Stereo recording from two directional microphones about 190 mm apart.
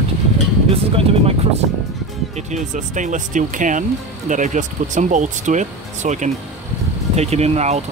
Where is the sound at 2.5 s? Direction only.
40° right (ahead or behind).